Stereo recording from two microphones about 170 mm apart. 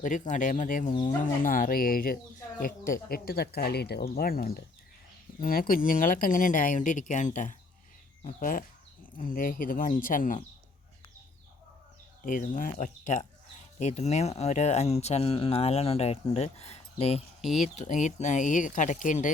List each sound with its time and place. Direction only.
0.0 s speech: 50° left (ahead or behind)
12.2 s speech: 50° left (ahead or behind)
17.4 s speech: centre (ahead or behind)
17.7 s speech: 45° left (ahead or behind)